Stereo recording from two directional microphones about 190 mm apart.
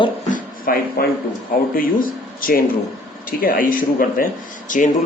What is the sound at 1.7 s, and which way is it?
A man's voice, 50° left (ahead or behind).